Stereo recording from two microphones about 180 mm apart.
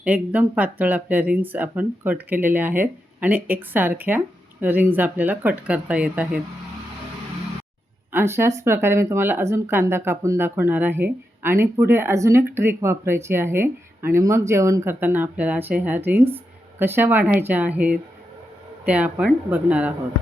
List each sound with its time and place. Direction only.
0.0 s speech: 5° right (ahead or behind)
8.1 s speech: 15° right (ahead or behind)